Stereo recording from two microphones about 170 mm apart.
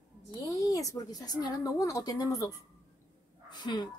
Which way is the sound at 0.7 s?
20° left (ahead or behind).